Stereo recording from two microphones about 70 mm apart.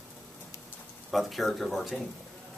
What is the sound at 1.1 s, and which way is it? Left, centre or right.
Speech, centre.